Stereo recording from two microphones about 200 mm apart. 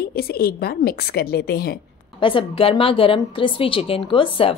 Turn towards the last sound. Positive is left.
turn(degrees=25)  # may be behind; listen again after turning